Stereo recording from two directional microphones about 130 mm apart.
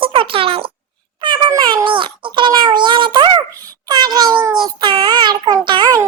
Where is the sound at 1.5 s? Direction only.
30° right (ahead or behind).